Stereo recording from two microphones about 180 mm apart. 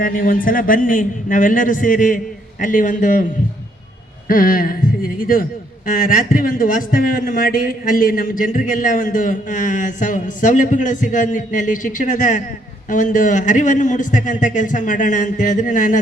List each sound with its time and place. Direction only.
0.0 s speech: 50° left (ahead or behind)
4.3 s speech: 50° left (ahead or behind)